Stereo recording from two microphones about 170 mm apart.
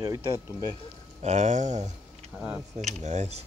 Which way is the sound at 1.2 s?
45° right (ahead or behind).